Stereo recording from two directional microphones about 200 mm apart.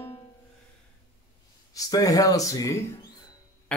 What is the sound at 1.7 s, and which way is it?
Speech, 15° left (ahead or behind).